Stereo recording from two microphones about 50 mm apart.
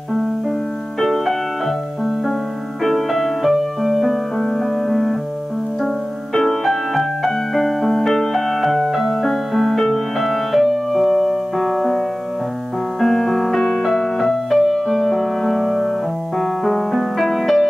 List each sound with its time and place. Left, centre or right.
1.0 s music: centre
2.8 s music: centre
6.3 s music: centre
13.0 s music: centre